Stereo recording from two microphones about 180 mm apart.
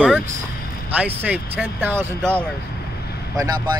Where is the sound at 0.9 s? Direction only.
10° right (ahead or behind).